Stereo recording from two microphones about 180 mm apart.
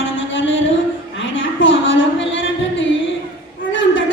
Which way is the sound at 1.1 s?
90° left.